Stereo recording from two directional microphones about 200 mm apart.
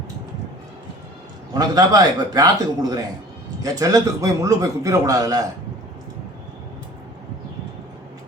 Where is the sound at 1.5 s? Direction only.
20° right (ahead or behind).